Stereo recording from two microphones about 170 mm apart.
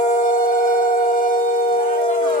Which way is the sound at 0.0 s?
50° left (ahead or behind).